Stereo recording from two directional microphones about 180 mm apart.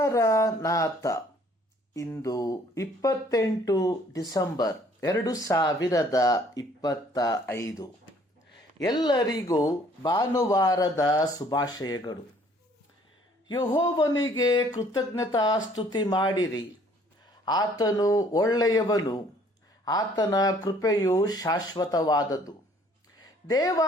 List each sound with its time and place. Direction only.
0.0 s speech: 15° left (ahead or behind)
13.7 s speech: 20° left (ahead or behind)
23.2 s a sound: 20° left (ahead or behind)